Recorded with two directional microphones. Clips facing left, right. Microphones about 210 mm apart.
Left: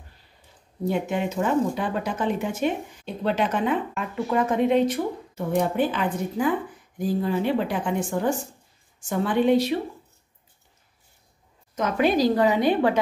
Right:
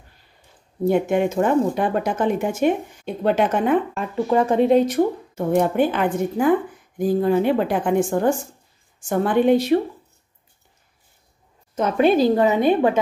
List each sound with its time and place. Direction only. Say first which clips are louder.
0.8 s speech: right 7 dB; 55° right (ahead or behind)
3.9 s speech: right 5 dB; 30° right (ahead or behind); by 9.8 s 50° right (ahead or behind)
11.7 s a woman's voice: right 5 dB; 30° right (ahead or behind)